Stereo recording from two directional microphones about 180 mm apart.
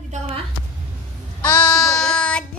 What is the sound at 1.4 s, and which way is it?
Child singing, 5° left (ahead or behind).